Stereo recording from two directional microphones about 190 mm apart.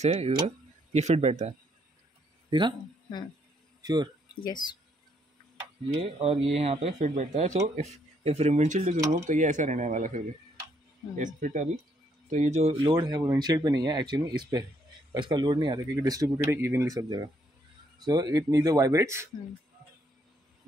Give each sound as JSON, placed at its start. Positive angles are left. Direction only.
{"t": 0.0, "sound": "speech", "side_deg": -30}
{"t": 2.5, "sound": "speech", "side_deg": -25}
{"t": 3.8, "sound": "speech", "side_deg": -20}
{"t": 4.4, "sound": "speech", "side_deg": 25}
{"t": 5.9, "sound": "speech", "side_deg": -30}
{"t": 11.3, "sound": "speech", "side_deg": -40}
{"t": 12.8, "sound": "speech", "side_deg": -20}